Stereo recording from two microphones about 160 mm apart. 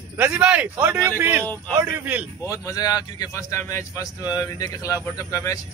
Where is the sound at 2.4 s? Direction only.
20° left (ahead or behind).